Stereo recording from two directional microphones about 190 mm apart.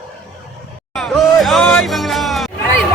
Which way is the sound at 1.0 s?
Centre (ahead or behind).